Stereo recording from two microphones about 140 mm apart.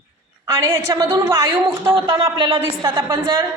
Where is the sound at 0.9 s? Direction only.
30° right (ahead or behind).